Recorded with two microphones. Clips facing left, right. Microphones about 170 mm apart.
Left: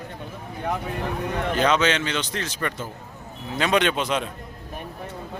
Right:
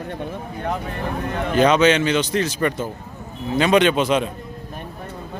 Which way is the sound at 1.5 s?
15° right (ahead or behind).